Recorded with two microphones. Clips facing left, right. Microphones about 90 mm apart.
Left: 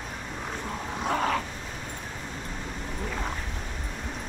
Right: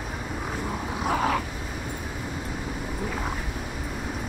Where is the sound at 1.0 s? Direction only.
5° right (ahead or behind).